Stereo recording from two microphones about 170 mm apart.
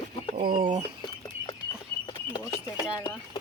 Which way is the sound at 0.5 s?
30° right (ahead or behind).